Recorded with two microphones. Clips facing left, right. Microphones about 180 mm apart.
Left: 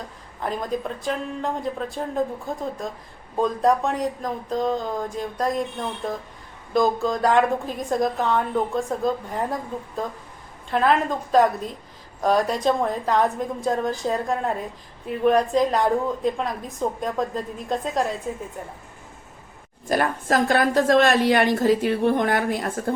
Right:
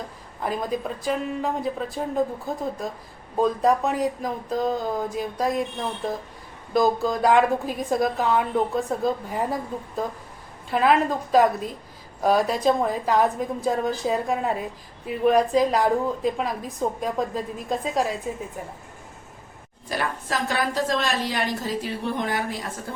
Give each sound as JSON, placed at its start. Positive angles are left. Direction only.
{"t": 0.4, "sound": "a woman's voice", "side_deg": -5}
{"t": 3.3, "sound": "a woman's voice", "side_deg": 0}
{"t": 19.9, "sound": "a woman's voice", "side_deg": 50}